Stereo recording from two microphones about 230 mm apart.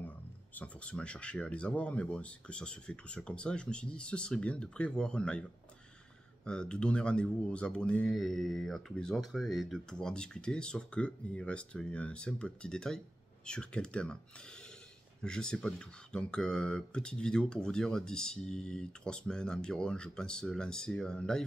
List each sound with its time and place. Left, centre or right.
0.6 s speech: centre
6.4 s speech: centre
15.2 s speech: centre